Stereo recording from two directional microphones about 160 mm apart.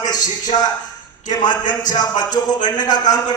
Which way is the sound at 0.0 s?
25° left (ahead or behind).